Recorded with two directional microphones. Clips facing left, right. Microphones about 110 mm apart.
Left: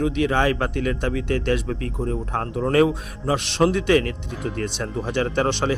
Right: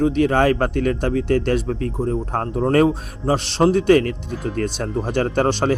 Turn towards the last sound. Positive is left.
turn(degrees=-40)  # may be behind; listen again after turning